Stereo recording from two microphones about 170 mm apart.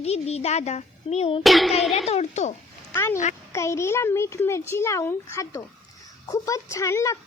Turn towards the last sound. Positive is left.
turn(degrees=20)  # may be behind; listen again after turning